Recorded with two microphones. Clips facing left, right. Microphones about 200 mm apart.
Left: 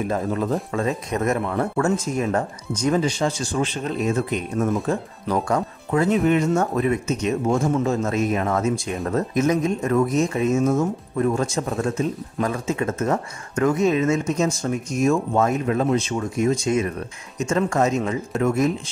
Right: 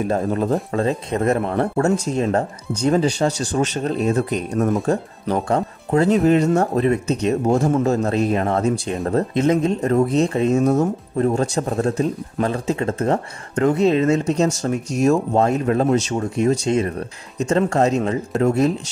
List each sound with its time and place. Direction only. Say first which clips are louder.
0.1 s speech: right 4 dB; 35° right (ahead or behind)